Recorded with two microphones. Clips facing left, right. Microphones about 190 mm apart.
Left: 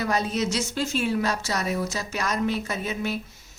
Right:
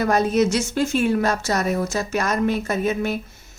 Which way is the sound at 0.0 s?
50° right (ahead or behind).